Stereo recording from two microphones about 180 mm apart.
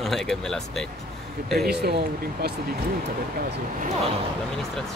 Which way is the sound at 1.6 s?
65° right (ahead or behind).